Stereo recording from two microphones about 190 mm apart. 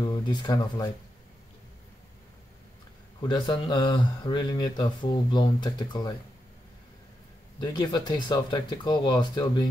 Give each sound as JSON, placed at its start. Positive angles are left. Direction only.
{"t": 0.0, "sound": "speech", "side_deg": 20}
{"t": 3.2, "sound": "speech", "side_deg": 25}
{"t": 7.6, "sound": "speech", "side_deg": 20}